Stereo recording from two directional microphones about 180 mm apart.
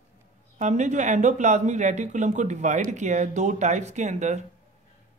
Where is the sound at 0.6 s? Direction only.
40° right (ahead or behind).